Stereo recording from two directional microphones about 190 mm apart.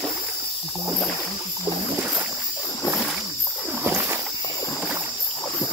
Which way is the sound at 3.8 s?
15° right (ahead or behind).